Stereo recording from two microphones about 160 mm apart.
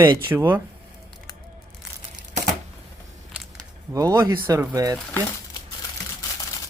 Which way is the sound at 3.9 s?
20° right (ahead or behind).